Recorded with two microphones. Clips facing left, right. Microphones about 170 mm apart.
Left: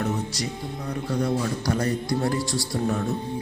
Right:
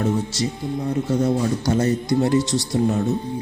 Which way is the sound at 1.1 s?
25° right (ahead or behind).